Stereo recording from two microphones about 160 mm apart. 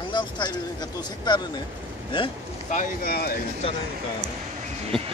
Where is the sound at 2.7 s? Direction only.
65° left (ahead or behind).